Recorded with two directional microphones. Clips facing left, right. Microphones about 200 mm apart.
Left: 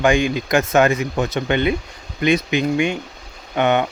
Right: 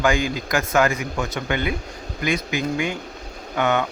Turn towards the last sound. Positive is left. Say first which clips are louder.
# left 4 dB
turn(degrees=20)  # may be behind; listen again after turning